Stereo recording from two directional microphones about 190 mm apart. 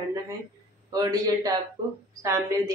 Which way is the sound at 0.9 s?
20° right (ahead or behind).